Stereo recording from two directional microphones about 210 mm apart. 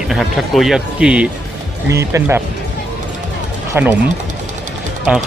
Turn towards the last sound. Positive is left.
turn(degrees=-5)  # may be behind; listen again after turning